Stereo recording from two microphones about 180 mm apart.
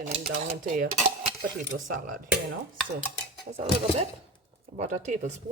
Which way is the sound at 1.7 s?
80° right.